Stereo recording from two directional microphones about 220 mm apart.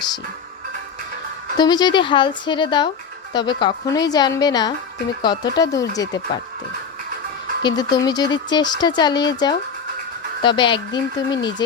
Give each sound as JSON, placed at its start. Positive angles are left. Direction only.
{"t": 1.5, "sound": "speech", "side_deg": 20}
{"t": 7.6, "sound": "speech", "side_deg": 20}